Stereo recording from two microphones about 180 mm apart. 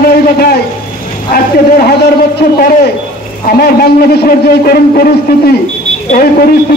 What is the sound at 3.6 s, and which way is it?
A man's voice, 60° left (ahead or behind).